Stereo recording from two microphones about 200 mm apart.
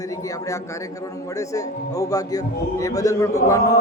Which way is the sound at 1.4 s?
15° left (ahead or behind).